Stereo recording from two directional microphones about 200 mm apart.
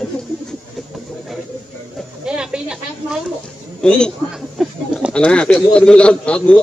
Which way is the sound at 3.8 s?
5° left (ahead or behind).